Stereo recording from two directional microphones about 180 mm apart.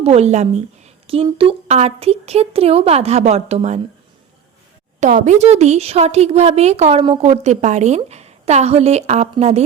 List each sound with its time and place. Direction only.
0.0 s speech: 35° right (ahead or behind)
4.9 s speech: 45° right (ahead or behind)